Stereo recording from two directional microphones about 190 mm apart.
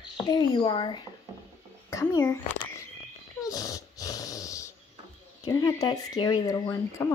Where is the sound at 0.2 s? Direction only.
25° left (ahead or behind).